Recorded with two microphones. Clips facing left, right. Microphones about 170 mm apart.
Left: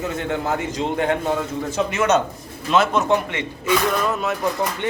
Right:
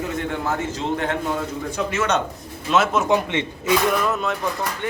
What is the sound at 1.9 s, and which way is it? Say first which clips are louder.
Speech: left 4 dB; 10° left (ahead or behind).